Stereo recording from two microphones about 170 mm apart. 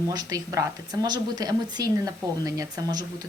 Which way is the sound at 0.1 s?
20° right (ahead or behind).